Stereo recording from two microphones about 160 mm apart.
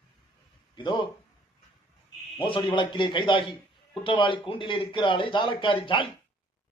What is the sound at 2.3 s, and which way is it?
Speech, 30° left (ahead or behind).